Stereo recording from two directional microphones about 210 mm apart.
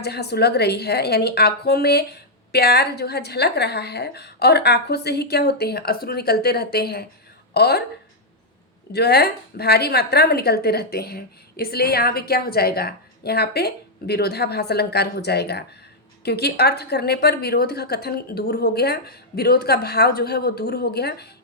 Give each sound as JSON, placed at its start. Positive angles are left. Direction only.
{"t": 0.0, "sound": "a woman's voice", "side_deg": 50}
{"t": 8.9, "sound": "a woman's voice", "side_deg": 50}